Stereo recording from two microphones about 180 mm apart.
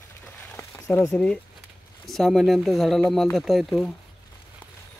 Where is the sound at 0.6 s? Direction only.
15° left (ahead or behind).